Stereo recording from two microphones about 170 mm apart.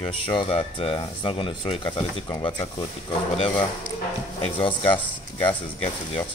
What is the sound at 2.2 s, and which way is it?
Speech, 25° left (ahead or behind).